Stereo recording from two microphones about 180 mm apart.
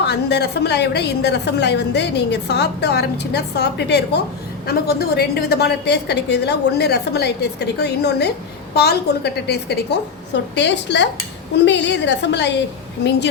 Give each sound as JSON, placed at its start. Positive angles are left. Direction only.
{"t": 0.0, "sound": "a woman's voice", "side_deg": 70}